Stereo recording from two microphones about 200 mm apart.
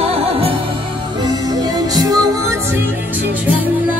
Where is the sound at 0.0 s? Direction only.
30° right (ahead or behind).